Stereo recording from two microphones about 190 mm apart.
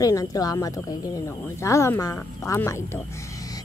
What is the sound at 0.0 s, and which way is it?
Speech, 20° left (ahead or behind).